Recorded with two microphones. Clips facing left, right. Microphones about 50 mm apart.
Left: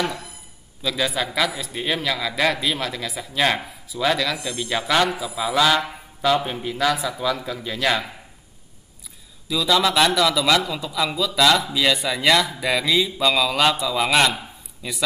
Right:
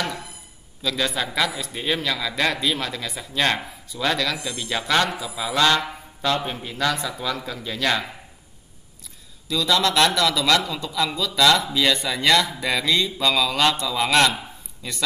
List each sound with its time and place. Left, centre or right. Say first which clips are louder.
0.8 s a man's voice: left 1 dB; centre
9.5 s a man's voice: left 1 dB; centre